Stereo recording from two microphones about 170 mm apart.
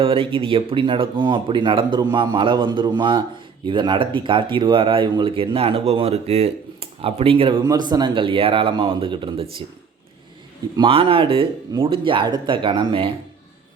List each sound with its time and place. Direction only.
0.0 s speech: 30° right (ahead or behind)
10.8 s speech: 30° right (ahead or behind)